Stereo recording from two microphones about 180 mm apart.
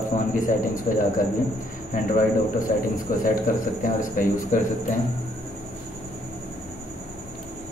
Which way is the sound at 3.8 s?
50° left (ahead or behind).